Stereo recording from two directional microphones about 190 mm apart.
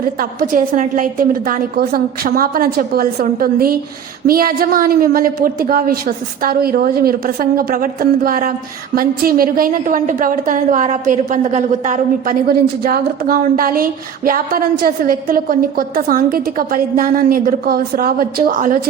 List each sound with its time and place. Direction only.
0.2 s a woman's voice: 45° right (ahead or behind)